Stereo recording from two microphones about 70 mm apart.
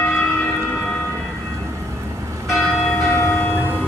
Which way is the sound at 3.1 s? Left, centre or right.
Left.